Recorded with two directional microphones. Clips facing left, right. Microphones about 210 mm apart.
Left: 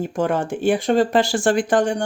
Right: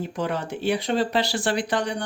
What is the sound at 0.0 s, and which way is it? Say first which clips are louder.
Speech: left 6 dB; 50° left (ahead or behind).